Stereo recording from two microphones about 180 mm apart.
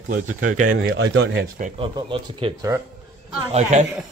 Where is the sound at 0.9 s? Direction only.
90° right.